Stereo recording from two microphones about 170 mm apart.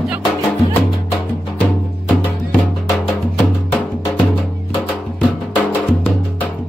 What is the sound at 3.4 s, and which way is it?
Music, 5° left (ahead or behind).